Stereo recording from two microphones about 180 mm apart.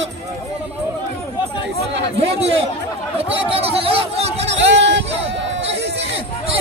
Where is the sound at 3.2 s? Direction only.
30° right (ahead or behind).